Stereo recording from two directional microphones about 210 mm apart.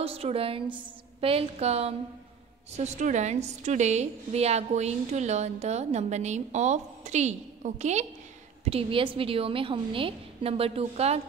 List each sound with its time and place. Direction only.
0.0 s a woman's voice: 30° right (ahead or behind)